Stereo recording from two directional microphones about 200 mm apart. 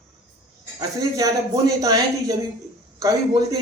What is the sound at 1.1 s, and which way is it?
A man's voice, 15° right (ahead or behind).